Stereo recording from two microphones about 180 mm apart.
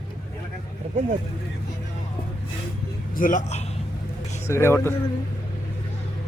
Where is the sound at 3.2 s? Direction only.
45° left (ahead or behind).